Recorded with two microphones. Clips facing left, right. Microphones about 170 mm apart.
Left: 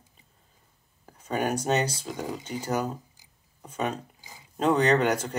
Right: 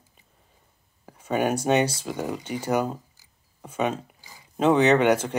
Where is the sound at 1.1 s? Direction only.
10° right (ahead or behind).